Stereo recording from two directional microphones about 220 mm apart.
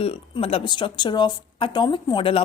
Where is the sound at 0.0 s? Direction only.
25° left (ahead or behind).